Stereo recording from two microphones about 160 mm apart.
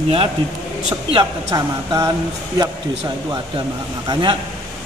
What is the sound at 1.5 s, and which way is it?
Speech, 20° right (ahead or behind).